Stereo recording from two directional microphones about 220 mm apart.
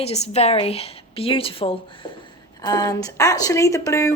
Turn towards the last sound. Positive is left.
turn(degrees=15)  # may be behind; listen again after turning